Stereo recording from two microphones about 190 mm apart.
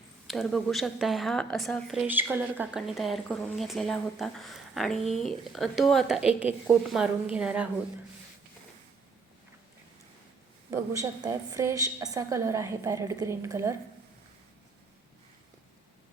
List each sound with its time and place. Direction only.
0.3 s a woman's voice: centre (ahead or behind)
10.7 s a woman's voice: 15° right (ahead or behind)